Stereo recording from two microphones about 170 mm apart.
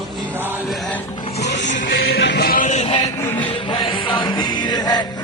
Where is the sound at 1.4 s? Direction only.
90° left.